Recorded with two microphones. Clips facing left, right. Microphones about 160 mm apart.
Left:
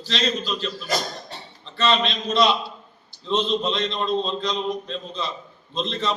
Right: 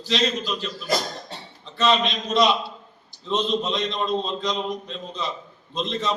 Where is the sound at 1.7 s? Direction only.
10° right (ahead or behind).